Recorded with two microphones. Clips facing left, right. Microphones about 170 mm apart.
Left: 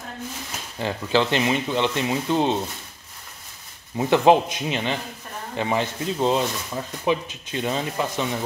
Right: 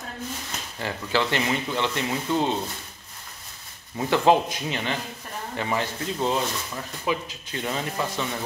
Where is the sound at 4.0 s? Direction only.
20° left (ahead or behind).